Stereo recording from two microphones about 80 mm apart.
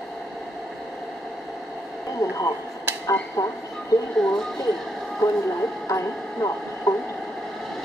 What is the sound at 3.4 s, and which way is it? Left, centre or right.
Speech, left.